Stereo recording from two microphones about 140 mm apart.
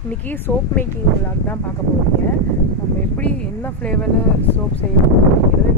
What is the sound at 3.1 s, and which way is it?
Speech, 10° left (ahead or behind).